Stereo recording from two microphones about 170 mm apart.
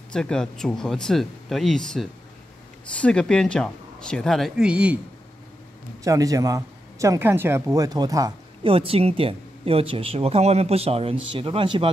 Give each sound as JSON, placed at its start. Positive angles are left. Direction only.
{"t": 0.1, "sound": "speech", "side_deg": 5}
{"t": 6.0, "sound": "speech", "side_deg": -20}
{"t": 8.7, "sound": "speech", "side_deg": -35}